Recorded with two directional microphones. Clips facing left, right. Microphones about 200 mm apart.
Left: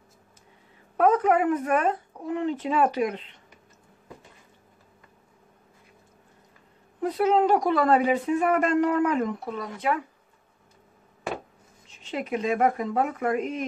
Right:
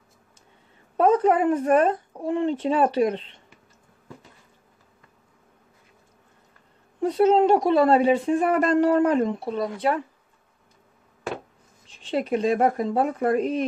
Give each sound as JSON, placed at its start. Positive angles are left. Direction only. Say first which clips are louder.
{"t": 0.9, "sound": "a woman's voice", "louder": "right 2 dB", "side_deg": -30}
{"t": 7.0, "sound": "speech", "louder": "right 4 dB", "side_deg": -30}
{"t": 11.9, "sound": "speech", "louder": "right 5 dB", "side_deg": -30}